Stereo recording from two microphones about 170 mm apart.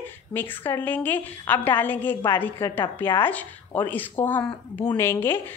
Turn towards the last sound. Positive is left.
turn(degrees=15)  # may be behind; listen again after turning